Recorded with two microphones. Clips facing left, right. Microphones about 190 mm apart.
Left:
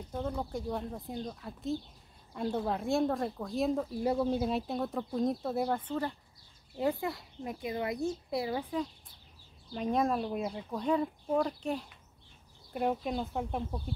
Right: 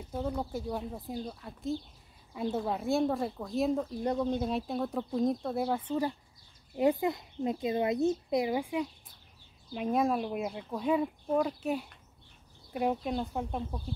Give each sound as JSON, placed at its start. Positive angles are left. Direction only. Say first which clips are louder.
{"t": 0.0, "sound": "speech", "louder": "right 2 dB", "side_deg": -5}